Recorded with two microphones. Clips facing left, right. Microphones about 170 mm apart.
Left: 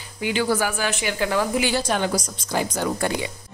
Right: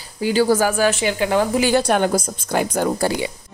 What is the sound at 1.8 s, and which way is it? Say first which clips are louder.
A woman's voice: right 5 dB; 55° right (ahead or behind).